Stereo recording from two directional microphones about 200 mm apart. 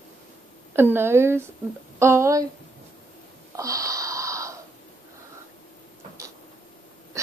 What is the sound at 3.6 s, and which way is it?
Wheeze, 15° right (ahead or behind).